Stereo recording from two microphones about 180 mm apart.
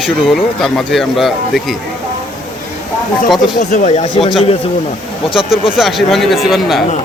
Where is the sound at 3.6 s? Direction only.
40° left (ahead or behind).